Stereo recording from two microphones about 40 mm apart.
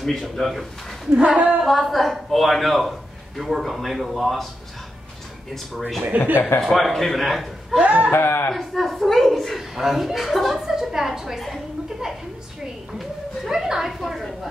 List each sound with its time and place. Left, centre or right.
0.4 s a man's voice: centre
1.2 s a sound: right
1.6 s a man's voice: centre
5.5 s a man's voice: centre
6.0 s speech: right
6.6 s a man's voice: centre
7.8 s speech: right
8.1 s speech: left
8.5 s a man's voice: centre
9.8 s a man's voice: centre
10.6 s a woman's voice: centre
13.5 s a woman's voice: centre
13.8 s a man's voice: centre